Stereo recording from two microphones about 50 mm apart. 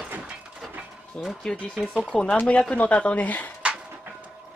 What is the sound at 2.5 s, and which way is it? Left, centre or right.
Speech, left.